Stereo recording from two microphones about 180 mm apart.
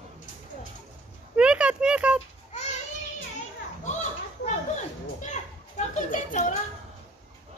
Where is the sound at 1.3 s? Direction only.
5° right (ahead or behind).